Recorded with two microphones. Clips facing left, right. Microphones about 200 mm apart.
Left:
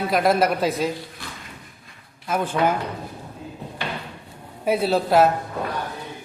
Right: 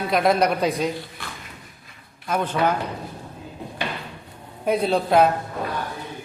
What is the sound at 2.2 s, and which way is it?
Speech, 5° left (ahead or behind).